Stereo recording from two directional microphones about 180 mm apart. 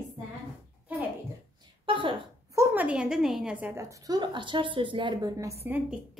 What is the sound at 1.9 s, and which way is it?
Speech, 30° right (ahead or behind).